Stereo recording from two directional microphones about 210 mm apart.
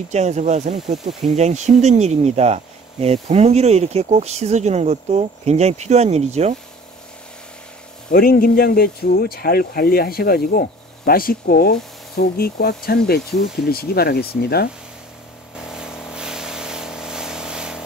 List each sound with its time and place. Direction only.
0.1 s speech: 35° right (ahead or behind)
8.1 s speech: 45° left (ahead or behind)
15.5 s vehicle: 5° right (ahead or behind)